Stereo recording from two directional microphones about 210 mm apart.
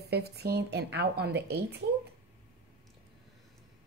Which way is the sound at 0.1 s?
50° right (ahead or behind).